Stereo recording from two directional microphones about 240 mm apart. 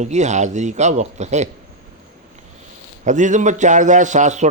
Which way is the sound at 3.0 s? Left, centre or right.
Right.